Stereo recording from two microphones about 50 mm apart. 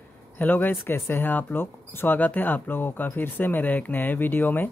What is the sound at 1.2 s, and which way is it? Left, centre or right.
Speech, left.